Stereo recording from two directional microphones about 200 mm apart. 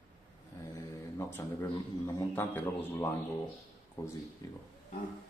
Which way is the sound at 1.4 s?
15° left (ahead or behind).